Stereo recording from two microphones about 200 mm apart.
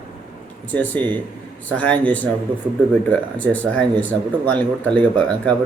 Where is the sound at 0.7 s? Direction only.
10° left (ahead or behind).